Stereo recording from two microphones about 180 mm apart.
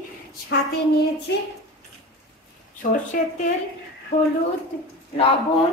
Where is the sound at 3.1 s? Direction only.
50° left (ahead or behind).